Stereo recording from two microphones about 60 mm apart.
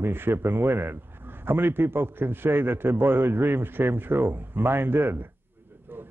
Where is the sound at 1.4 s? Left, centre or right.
Right.